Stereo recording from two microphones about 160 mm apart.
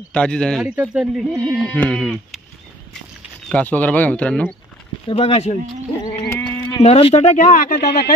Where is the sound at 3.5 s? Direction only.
10° left (ahead or behind).